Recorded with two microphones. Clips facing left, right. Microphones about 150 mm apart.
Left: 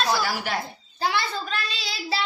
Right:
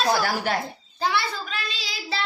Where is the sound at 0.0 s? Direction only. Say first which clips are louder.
Right 2 dB; 55° right (ahead or behind).